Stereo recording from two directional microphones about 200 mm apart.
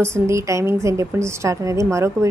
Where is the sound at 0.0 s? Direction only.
15° right (ahead or behind).